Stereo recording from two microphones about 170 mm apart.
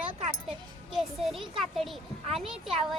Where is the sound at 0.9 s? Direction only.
Centre (ahead or behind).